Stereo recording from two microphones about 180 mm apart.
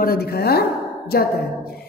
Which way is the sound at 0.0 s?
60° left (ahead or behind).